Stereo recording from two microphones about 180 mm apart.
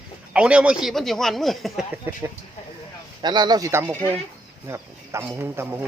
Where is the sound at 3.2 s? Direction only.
25° right (ahead or behind).